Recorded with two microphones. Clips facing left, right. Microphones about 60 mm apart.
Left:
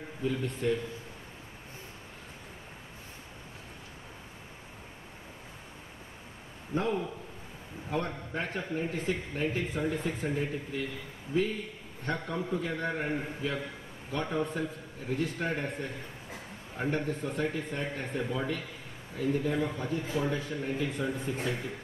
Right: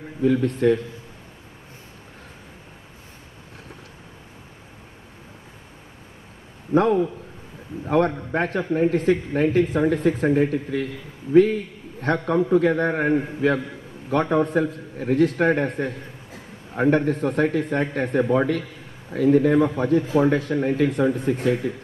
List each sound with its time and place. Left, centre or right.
0.2 s a man's voice: right
6.7 s a man's voice: right